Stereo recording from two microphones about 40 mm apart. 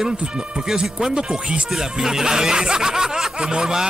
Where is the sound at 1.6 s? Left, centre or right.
Centre.